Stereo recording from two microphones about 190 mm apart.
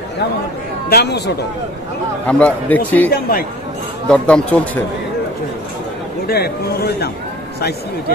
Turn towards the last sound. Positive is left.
turn(degrees=55)  # may be behind; listen again after turning